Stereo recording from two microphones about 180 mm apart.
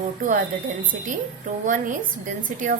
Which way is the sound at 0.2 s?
45° right (ahead or behind).